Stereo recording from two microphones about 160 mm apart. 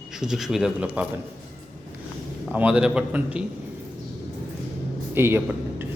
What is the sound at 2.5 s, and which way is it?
Speech, 10° right (ahead or behind).